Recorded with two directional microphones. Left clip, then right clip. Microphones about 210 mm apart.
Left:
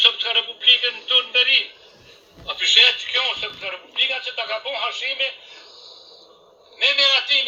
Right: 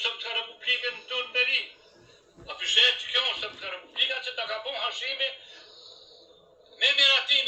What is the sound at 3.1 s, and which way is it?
A man's voice, 40° left (ahead or behind).